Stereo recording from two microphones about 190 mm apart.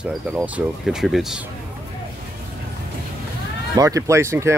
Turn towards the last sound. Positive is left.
turn(degrees=-15)  # may be behind; listen again after turning